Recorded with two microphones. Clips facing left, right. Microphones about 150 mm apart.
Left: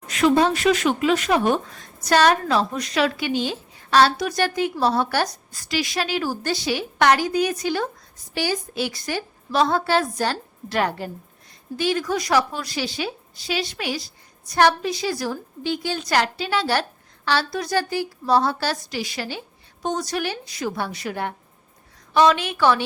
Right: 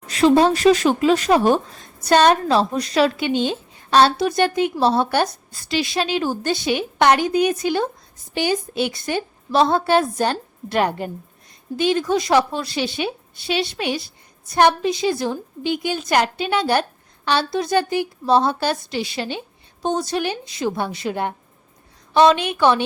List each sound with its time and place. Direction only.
0.1 s a woman's voice: 30° right (ahead or behind)